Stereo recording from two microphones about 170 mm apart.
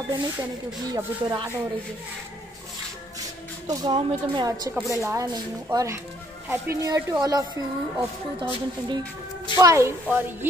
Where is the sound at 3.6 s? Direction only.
25° right (ahead or behind).